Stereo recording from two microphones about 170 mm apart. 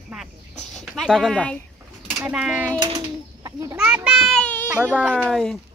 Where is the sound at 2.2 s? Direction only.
5° right (ahead or behind).